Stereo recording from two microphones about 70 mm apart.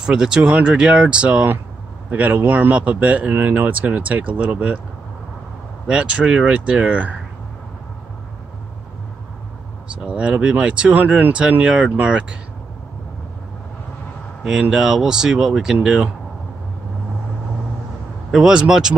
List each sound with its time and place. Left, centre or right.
0.0 s speech: centre
5.9 s speech: centre
10.0 s speech: centre
14.4 s speech: centre
18.3 s speech: centre